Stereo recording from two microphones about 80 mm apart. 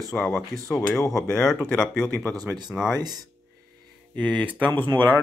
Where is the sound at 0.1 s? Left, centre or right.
Centre.